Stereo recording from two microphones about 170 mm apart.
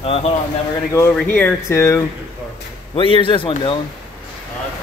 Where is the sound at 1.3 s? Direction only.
10° left (ahead or behind).